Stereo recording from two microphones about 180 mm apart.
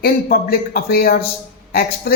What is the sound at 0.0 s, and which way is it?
A man's voice, 55° left (ahead or behind).